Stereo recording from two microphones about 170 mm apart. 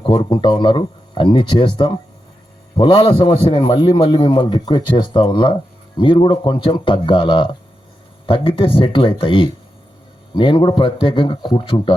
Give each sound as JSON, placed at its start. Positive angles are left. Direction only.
{"t": 0.0, "sound": "a man's voice", "side_deg": 30}